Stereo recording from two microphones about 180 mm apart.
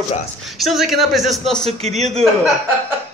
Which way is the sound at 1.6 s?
35° right (ahead or behind).